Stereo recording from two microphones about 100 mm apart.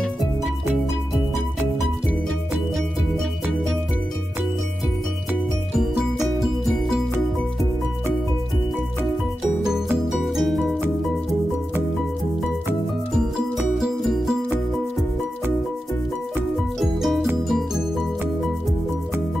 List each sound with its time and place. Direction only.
6.4 s music: 5° right (ahead or behind)
10.0 s music: centre (ahead or behind)
13.7 s music: 5° right (ahead or behind)
16.5 s music: centre (ahead or behind)